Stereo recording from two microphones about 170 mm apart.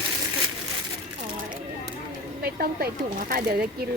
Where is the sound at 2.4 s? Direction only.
65° right (ahead or behind).